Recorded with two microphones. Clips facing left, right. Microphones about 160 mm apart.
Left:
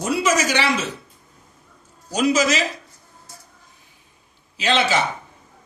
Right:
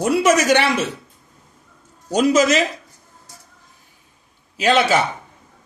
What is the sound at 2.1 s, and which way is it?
Speech, 50° right (ahead or behind).